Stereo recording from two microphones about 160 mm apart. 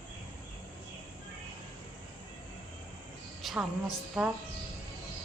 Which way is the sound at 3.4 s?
Centre (ahead or behind).